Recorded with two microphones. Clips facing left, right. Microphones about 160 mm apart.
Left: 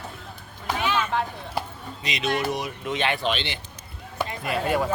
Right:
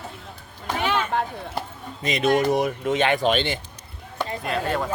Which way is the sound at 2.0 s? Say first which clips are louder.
Right 6 dB; 50° right (ahead or behind).